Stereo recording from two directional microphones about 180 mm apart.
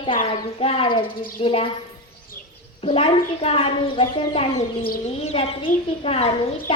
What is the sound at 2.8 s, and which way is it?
A child's voice, 30° left (ahead or behind).